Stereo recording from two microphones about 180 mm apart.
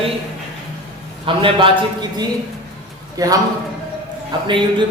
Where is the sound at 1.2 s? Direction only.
30° right (ahead or behind).